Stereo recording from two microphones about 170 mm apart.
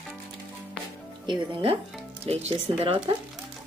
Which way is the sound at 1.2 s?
25° right (ahead or behind).